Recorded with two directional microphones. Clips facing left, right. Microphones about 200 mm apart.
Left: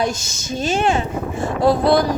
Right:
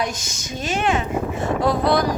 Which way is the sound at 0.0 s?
30° left (ahead or behind).